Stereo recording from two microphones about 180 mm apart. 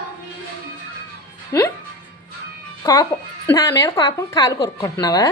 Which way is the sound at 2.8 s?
20° left (ahead or behind).